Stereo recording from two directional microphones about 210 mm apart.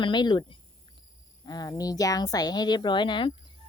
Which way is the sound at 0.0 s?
20° left (ahead or behind).